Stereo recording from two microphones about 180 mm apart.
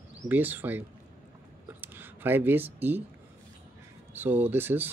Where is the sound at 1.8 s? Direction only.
10° right (ahead or behind).